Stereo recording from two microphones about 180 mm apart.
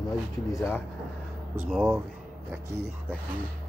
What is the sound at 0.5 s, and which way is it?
Speech, 15° left (ahead or behind).